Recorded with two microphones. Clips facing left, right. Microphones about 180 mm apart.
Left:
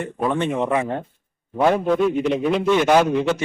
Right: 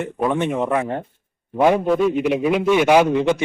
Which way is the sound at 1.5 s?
15° right (ahead or behind).